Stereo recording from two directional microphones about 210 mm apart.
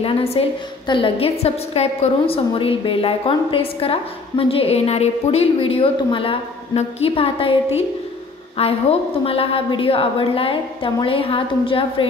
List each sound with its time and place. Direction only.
0.0 s a woman's voice: 30° left (ahead or behind)